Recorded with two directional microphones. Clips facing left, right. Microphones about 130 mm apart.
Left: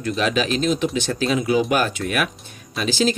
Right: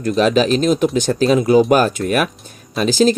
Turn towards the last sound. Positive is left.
turn(degrees=-45)  # may be behind; listen again after turning